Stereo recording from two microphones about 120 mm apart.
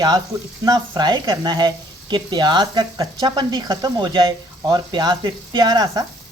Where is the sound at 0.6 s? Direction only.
35° right (ahead or behind).